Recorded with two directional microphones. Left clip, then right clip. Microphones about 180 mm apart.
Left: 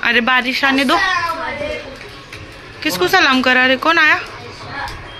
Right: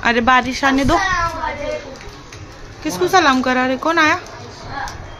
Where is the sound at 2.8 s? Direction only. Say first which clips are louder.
Left 1 dB; 10° right (ahead or behind).